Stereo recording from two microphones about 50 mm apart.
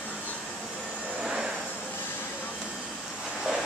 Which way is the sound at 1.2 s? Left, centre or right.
Centre.